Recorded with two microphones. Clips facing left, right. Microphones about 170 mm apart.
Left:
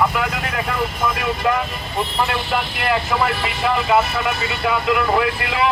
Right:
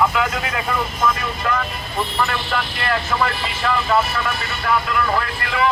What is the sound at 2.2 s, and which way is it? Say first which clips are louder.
Speech: left 2 dB; 10° left (ahead or behind).